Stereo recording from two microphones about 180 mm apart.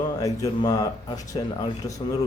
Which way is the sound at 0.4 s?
20° left (ahead or behind).